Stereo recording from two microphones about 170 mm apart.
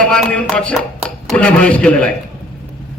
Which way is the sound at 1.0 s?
5° left (ahead or behind).